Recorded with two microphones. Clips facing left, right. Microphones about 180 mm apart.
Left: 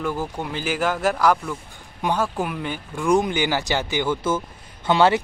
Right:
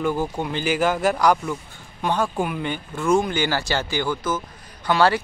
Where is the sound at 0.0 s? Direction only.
Centre (ahead or behind).